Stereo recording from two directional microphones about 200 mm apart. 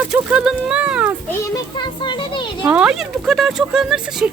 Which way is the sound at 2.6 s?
5° right (ahead or behind).